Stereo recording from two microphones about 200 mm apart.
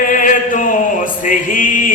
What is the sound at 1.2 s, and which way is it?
Music, 40° left (ahead or behind).